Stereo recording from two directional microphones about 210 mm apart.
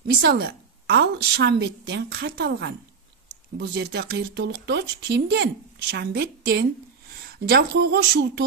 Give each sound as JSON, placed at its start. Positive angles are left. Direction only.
{"t": 0.0, "sound": "speech", "side_deg": -50}